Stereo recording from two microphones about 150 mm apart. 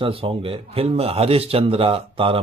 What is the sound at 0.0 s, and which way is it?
A man's voice, 40° right (ahead or behind).